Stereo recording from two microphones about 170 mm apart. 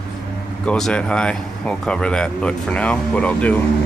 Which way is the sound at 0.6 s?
5° left (ahead or behind).